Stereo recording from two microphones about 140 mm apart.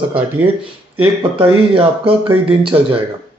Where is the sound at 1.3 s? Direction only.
40° right (ahead or behind).